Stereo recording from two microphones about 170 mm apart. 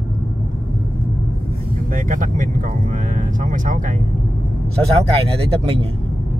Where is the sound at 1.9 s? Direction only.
50° right (ahead or behind).